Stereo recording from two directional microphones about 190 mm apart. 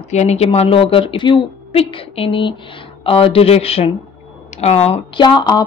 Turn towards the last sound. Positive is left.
turn(degrees=20)  # may be behind; listen again after turning